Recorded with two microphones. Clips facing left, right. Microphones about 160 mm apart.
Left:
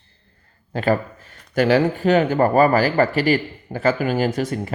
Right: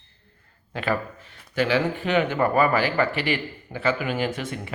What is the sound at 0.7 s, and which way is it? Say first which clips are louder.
A man's voice: left 6 dB; 40° left (ahead or behind).